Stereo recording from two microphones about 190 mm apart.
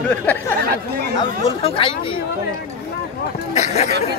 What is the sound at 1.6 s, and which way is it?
Speech, 30° left (ahead or behind).